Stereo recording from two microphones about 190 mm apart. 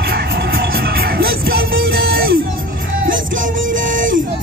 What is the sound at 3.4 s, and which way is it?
Music, 45° right (ahead or behind).